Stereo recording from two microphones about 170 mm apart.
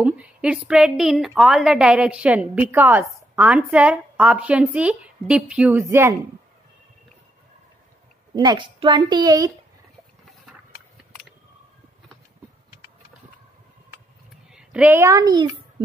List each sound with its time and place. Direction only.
0.0 s a woman's voice: 5° right (ahead or behind)
8.4 s a woman's voice: 25° right (ahead or behind)
14.5 s a child's voice: 5° right (ahead or behind); by 15.5 s 25° right (ahead or behind)